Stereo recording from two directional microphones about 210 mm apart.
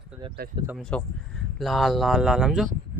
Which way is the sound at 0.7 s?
5° left (ahead or behind).